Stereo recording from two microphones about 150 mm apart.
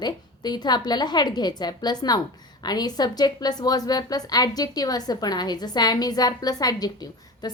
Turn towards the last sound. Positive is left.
turn(degrees=25)  # may be behind; listen again after turning